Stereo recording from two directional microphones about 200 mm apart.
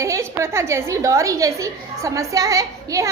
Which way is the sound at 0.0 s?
15° right (ahead or behind).